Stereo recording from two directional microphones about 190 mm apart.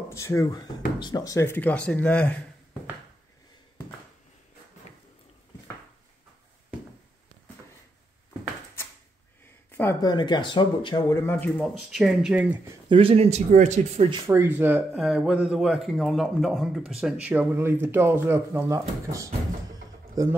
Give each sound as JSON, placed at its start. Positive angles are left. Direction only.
{"t": 0.1, "sound": "speech", "side_deg": 15}
{"t": 9.7, "sound": "a sound", "side_deg": 10}
{"t": 10.0, "sound": "speech", "side_deg": 25}
{"t": 12.9, "sound": "speech", "side_deg": -30}
{"t": 14.1, "sound": "speech", "side_deg": -15}